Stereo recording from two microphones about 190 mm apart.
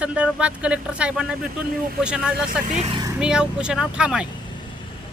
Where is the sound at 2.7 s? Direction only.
35° right (ahead or behind).